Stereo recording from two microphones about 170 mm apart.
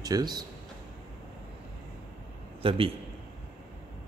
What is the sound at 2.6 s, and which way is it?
Speech, 35° right (ahead or behind).